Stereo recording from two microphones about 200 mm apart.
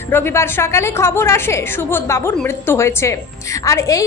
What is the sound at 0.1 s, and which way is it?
A woman's voice, 10° left (ahead or behind).